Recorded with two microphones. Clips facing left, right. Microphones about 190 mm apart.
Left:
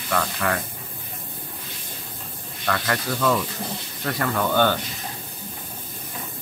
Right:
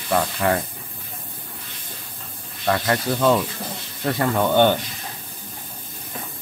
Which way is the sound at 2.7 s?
25° right (ahead or behind).